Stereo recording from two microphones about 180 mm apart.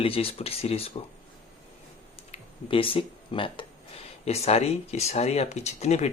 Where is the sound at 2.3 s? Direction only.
30° left (ahead or behind).